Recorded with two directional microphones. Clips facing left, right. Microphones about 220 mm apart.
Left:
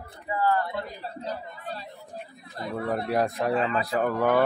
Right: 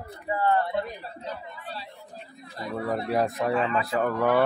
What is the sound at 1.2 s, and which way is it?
Chatter, 40° left (ahead or behind).